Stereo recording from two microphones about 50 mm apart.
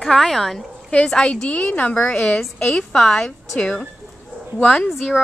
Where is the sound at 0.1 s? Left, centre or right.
Centre.